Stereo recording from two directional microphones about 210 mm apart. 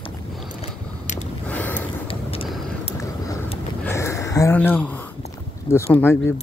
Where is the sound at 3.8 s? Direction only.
15° left (ahead or behind).